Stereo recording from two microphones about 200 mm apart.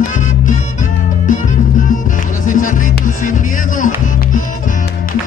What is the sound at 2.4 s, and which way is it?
Music, 40° left (ahead or behind).